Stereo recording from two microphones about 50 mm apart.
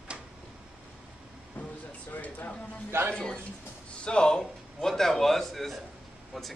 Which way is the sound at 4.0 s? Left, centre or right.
Centre.